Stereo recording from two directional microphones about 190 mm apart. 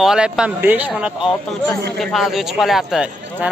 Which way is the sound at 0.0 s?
5° right (ahead or behind).